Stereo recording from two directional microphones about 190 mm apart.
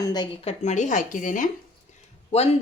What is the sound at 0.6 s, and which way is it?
Speech, 40° left (ahead or behind).